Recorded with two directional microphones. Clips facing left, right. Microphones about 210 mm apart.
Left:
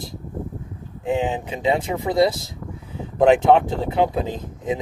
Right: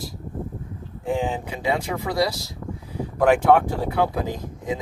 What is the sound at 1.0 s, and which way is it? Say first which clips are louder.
Speech: left 2 dB; 20° left (ahead or behind).